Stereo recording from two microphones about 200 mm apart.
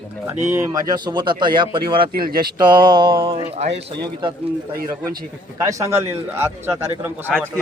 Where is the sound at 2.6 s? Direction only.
20° right (ahead or behind).